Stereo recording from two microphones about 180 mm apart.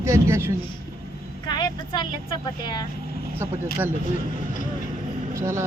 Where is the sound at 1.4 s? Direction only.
25° left (ahead or behind).